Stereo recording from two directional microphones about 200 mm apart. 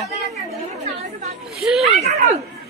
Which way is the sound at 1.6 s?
Centre (ahead or behind).